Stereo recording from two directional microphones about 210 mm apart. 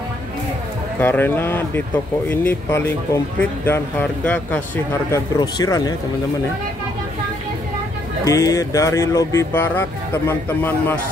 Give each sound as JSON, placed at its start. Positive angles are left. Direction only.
{"t": 1.0, "sound": "speech", "side_deg": 10}
{"t": 8.3, "sound": "speech", "side_deg": 15}